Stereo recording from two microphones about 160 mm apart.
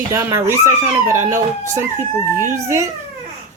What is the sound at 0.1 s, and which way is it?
Speech, 15° right (ahead or behind).